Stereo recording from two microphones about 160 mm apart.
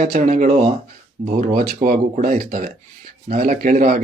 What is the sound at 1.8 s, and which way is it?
Speech, 60° right (ahead or behind).